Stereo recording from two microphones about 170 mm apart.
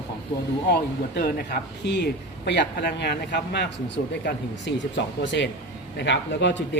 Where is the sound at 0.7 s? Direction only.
70° left (ahead or behind).